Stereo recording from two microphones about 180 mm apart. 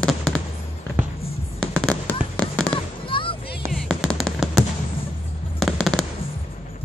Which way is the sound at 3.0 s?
30° left (ahead or behind).